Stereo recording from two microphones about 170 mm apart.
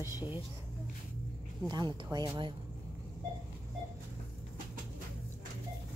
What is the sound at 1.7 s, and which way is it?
Speech, 25° right (ahead or behind).